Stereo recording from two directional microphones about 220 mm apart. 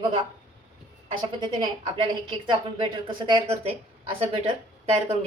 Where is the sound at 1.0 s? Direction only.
20° right (ahead or behind).